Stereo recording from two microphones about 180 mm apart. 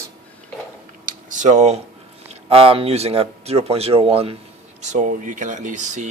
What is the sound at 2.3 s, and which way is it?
Speech, 30° right (ahead or behind).